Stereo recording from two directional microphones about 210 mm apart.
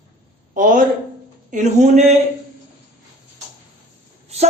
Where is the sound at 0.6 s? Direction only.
40° right (ahead or behind).